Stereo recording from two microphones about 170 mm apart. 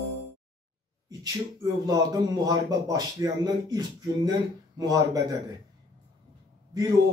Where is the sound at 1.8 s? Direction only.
20° right (ahead or behind).